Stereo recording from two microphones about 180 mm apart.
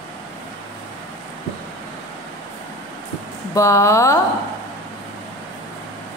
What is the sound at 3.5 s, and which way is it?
Speech, 15° left (ahead or behind).